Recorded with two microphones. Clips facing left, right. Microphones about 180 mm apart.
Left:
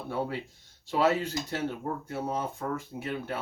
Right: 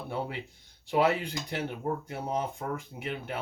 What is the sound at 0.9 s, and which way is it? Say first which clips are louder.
Speech: even; 15° right (ahead or behind).